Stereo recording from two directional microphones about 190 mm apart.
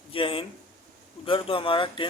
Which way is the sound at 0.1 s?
30° left (ahead or behind).